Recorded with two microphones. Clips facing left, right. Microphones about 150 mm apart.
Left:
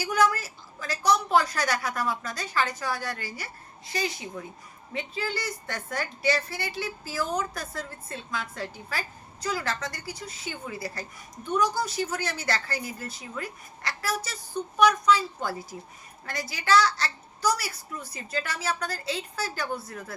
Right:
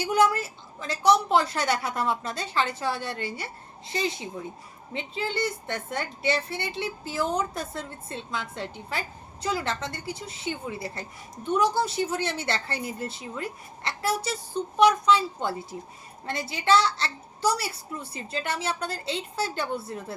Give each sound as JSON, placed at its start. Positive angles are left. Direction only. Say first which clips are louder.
{"t": 0.0, "sound": "a woman's voice", "louder": "right 2 dB", "side_deg": -25}